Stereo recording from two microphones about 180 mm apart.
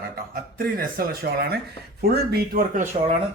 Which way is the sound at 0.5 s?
50° right (ahead or behind).